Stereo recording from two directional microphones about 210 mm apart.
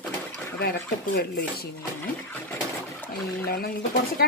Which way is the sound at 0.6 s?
45° left (ahead or behind).